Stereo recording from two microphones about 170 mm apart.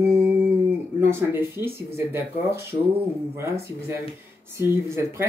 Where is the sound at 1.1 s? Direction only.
15° right (ahead or behind).